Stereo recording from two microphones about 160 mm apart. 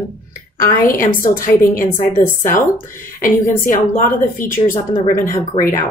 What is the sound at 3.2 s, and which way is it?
Speech, 55° left (ahead or behind).